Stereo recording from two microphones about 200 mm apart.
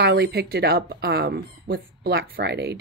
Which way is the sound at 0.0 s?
55° right (ahead or behind).